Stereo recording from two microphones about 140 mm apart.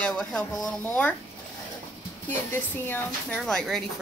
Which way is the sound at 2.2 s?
15° left (ahead or behind).